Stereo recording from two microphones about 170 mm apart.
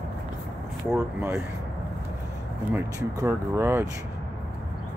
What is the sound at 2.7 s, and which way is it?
Speech, 20° right (ahead or behind).